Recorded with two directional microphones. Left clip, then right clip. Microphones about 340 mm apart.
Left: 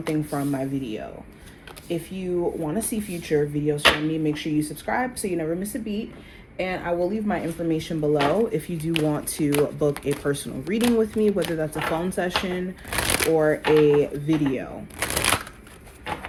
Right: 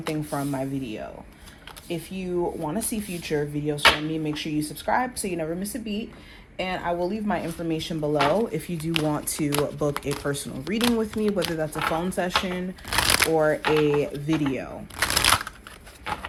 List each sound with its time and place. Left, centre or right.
0.1 s speech: right
6.6 s speech: right